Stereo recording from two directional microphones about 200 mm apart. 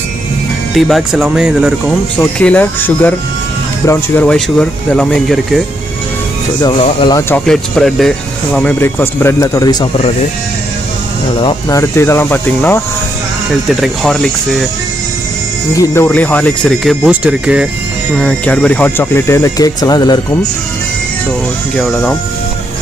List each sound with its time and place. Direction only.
0.7 s speech: centre (ahead or behind)
6.8 s speech: 25° left (ahead or behind)
7.2 s speech: 10° left (ahead or behind)
11.4 s speech: 15° left (ahead or behind)
15.7 s speech: 15° left (ahead or behind); by 17.6 s 5° right (ahead or behind)
18.1 s speech: 5° left (ahead or behind)
21.7 s speech: centre (ahead or behind)